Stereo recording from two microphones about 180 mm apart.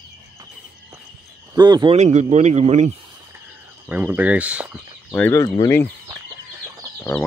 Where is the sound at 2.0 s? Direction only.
40° right (ahead or behind).